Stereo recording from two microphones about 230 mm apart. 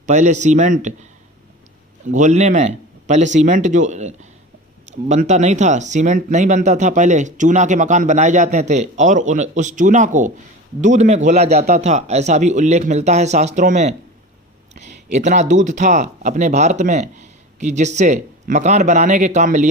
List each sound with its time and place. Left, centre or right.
0.0 s speech: right
2.0 s a man's voice: right